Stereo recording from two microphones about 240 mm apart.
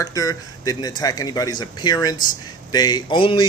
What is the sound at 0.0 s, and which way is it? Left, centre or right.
A man's voice, centre.